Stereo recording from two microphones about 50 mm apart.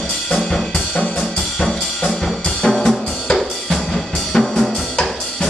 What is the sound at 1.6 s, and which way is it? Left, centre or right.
Drum kit, centre.